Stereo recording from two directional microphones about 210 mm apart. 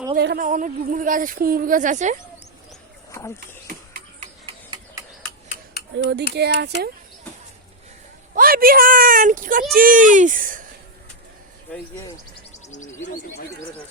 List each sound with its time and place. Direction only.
0.2 s speech: 45° right (ahead or behind)
3.1 s speech: 15° left (ahead or behind)
3.7 s a sound: 40° right (ahead or behind)
4.4 s a sound: 20° right (ahead or behind)
5.9 s speech: 55° right (ahead or behind)
8.4 s speech: 45° right (ahead or behind)
11.7 s speech: 5° left (ahead or behind)
12.6 s speech: 35° left (ahead or behind)